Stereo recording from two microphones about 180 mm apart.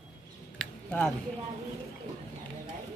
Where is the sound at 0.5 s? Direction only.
5° left (ahead or behind).